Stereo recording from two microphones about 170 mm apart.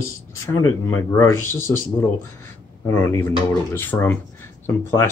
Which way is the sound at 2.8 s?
15° left (ahead or behind).